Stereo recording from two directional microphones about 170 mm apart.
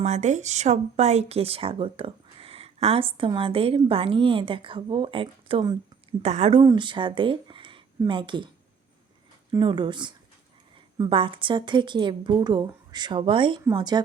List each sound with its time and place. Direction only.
0.0 s speech: 45° right (ahead or behind); by 8.4 s 30° right (ahead or behind)
9.5 s a woman's voice: 25° right (ahead or behind)